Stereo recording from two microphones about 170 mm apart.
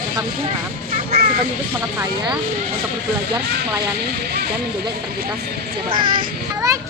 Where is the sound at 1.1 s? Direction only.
60° right (ahead or behind).